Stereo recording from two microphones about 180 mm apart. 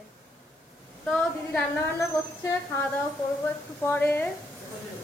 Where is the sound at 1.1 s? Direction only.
5° left (ahead or behind).